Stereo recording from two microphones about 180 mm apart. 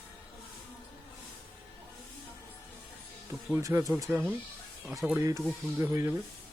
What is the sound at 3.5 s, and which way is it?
Speech, 15° right (ahead or behind).